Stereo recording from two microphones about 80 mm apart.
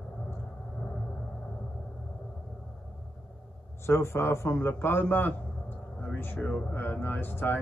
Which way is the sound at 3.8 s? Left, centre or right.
Left.